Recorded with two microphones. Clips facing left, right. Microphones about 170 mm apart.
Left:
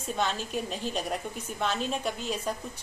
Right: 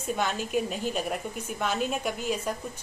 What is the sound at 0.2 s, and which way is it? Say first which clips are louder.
A woman's voice: right 1 dB; 10° right (ahead or behind).